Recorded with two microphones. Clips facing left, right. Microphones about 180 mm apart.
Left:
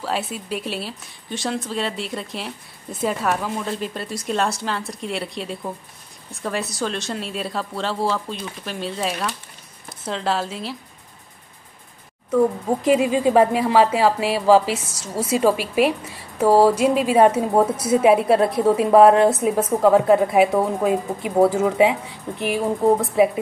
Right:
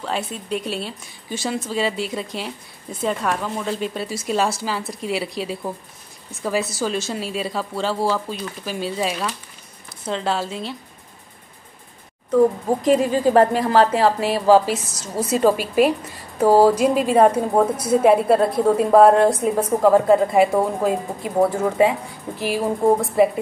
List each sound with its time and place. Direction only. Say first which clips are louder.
0.0 s speech: left 1 dB; 5° left (ahead or behind)
12.3 s speech: right 2 dB; 5° right (ahead or behind)
12.8 s speech: even; 5° left (ahead or behind)